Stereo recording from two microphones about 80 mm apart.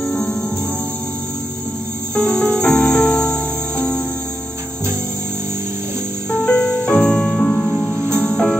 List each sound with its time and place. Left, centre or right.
0.0 s music: centre
2.1 s cricket: centre
2.6 s music: centre
6.3 s music: centre